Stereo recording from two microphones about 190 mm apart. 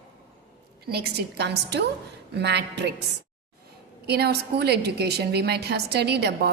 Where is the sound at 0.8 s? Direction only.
60° right (ahead or behind).